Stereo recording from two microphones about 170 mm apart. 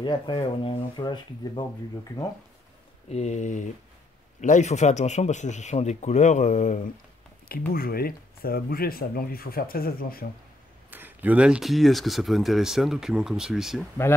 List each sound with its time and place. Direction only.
0.0 s speech: 25° left (ahead or behind)
3.1 s a man's voice: 40° left (ahead or behind)
7.7 s speech: 60° left (ahead or behind)
10.9 s speech: 10° right (ahead or behind)